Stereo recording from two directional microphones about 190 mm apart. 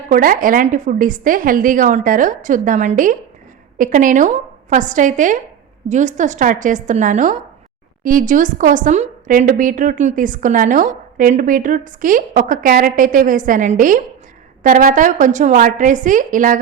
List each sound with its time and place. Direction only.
0.1 s a woman's voice: 45° right (ahead or behind)